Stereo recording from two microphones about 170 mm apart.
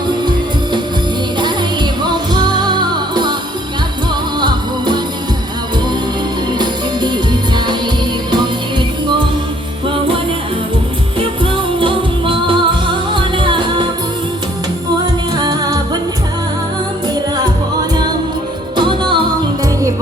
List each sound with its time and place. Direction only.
1.4 s music: 25° right (ahead or behind)
4.4 s music: 25° right (ahead or behind)
6.5 s music: 25° right (ahead or behind)
9.8 s music: 30° right (ahead or behind)
11.8 s music: 30° right (ahead or behind)
15.4 s music: 25° right (ahead or behind)
18.8 s music: 30° right (ahead or behind)